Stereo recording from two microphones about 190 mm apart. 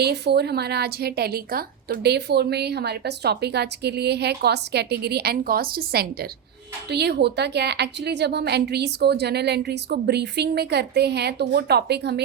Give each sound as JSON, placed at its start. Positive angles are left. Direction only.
{"t": 0.0, "sound": "a woman's voice", "side_deg": -60}